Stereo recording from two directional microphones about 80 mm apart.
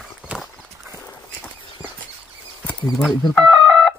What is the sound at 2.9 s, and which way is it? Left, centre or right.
Speech, centre.